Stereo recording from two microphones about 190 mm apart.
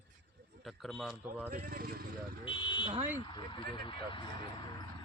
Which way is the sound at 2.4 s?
25° left (ahead or behind).